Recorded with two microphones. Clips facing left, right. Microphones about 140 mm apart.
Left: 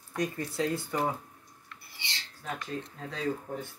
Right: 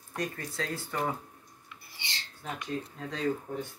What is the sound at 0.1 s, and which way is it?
Speech, 15° left (ahead or behind).